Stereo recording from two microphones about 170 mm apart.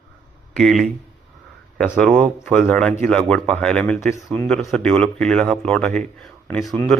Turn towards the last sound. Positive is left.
turn(degrees=0)  # may be behind; listen again after turning